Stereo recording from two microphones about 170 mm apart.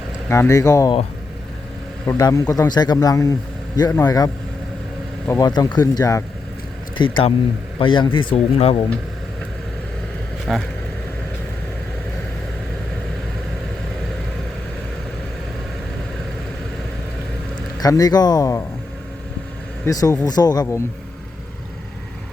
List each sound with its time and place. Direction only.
0.3 s speech: 15° left (ahead or behind)
2.0 s speech: 20° left (ahead or behind)
5.3 s speech: 25° left (ahead or behind)
6.9 s speech: 30° left (ahead or behind)
10.4 s speech: centre (ahead or behind)
17.7 s speech: 20° left (ahead or behind)
19.8 s speech: 20° left (ahead or behind)